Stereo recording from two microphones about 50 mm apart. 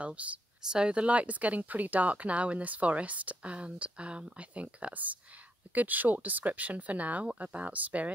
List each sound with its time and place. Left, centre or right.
0.0 s speech: right
0.7 s speech: centre